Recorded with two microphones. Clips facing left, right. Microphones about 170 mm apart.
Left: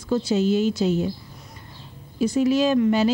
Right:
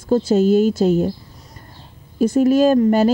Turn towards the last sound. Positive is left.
turn(degrees=-45)  # may be behind; listen again after turning